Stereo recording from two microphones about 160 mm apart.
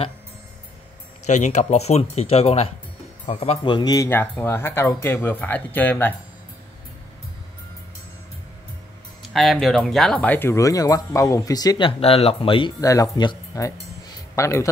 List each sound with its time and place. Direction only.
1.2 s speech: 45° left (ahead or behind); by 6.1 s 10° left (ahead or behind)
9.3 s speech: centre (ahead or behind); by 11.9 s 25° left (ahead or behind)
12.0 s speech: 35° left (ahead or behind)
12.8 s a man's voice: 20° left (ahead or behind)